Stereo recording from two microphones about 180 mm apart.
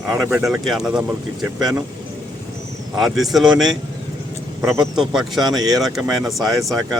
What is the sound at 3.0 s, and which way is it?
Speech, centre (ahead or behind).